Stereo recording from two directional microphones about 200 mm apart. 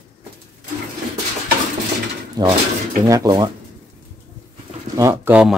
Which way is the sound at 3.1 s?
20° right (ahead or behind).